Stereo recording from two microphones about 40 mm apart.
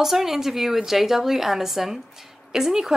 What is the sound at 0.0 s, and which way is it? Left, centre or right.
A woman's voice, centre.